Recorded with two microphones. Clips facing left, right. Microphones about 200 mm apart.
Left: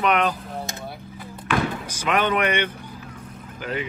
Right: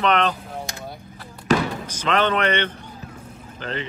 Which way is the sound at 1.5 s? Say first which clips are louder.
Right 4 dB; 40° right (ahead or behind).